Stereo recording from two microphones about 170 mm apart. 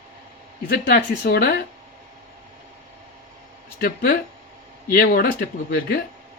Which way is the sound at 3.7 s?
60° left (ahead or behind).